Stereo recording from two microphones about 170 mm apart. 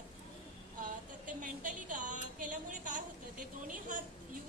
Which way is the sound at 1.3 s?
50° right (ahead or behind).